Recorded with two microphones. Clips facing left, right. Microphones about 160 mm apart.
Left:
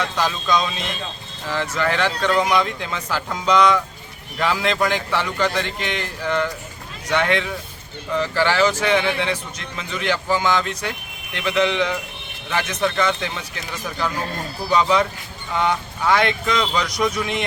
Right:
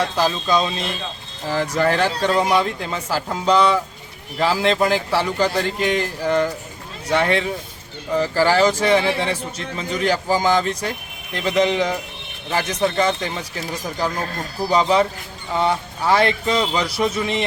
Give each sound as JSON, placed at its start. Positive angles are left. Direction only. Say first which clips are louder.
{"t": 0.2, "sound": "a man's voice", "louder": "right 1 dB", "side_deg": -35}